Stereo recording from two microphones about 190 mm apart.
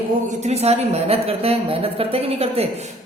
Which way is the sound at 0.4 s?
35° right (ahead or behind).